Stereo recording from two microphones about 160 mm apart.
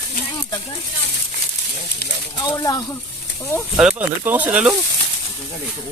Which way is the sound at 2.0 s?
85° left.